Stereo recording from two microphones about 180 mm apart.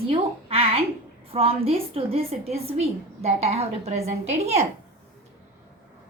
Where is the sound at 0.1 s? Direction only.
35° right (ahead or behind).